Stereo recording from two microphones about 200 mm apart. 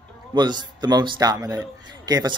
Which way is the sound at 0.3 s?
20° right (ahead or behind).